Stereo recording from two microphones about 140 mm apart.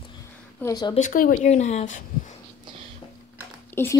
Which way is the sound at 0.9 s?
70° left (ahead or behind).